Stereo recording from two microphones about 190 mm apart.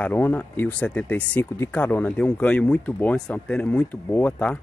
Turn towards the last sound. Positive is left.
turn(degrees=5)  # may be behind; listen again after turning